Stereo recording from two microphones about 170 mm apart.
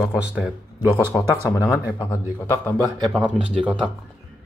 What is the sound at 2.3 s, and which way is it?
Speech, 15° left (ahead or behind).